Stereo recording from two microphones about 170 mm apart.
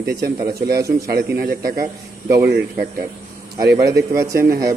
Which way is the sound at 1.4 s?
65° right (ahead or behind).